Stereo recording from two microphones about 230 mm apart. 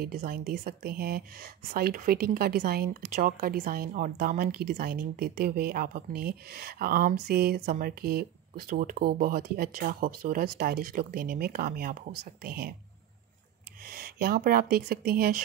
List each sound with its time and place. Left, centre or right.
0.0 s a woman's voice: right
13.8 s speech: right